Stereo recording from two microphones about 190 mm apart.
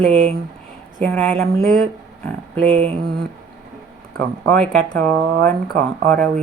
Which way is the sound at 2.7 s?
35° right (ahead or behind).